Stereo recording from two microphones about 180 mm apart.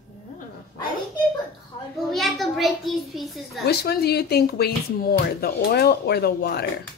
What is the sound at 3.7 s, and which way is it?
Speech, 60° left (ahead or behind).